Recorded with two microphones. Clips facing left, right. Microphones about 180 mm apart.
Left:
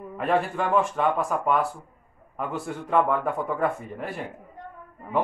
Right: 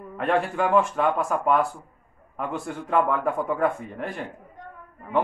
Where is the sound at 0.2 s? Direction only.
Centre (ahead or behind).